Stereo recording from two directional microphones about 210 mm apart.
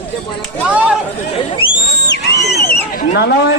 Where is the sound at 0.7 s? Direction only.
5° right (ahead or behind).